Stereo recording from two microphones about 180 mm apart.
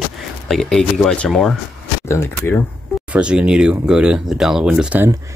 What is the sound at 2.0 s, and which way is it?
Speech, 15° left (ahead or behind).